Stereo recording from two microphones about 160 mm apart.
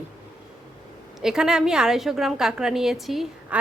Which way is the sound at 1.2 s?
5° right (ahead or behind).